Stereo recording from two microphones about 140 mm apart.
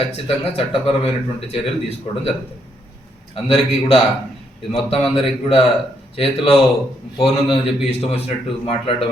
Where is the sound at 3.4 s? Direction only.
45° left (ahead or behind).